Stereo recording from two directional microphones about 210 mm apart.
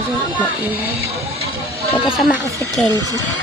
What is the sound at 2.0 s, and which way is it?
Speech, 5° right (ahead or behind).